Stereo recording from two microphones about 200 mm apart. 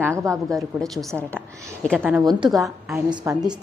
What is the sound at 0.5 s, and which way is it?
A woman's voice, centre (ahead or behind).